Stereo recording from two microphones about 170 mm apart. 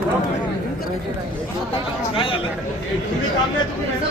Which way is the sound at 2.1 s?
30° left (ahead or behind).